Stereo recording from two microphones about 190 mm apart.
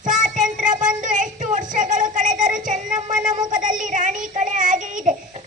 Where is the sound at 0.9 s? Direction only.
40° right (ahead or behind).